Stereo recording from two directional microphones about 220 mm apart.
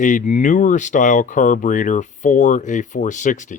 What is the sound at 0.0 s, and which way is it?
Speech, 35° left (ahead or behind).